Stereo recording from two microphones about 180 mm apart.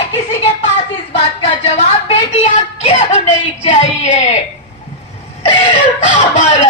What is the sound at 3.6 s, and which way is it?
Speech, 35° left (ahead or behind).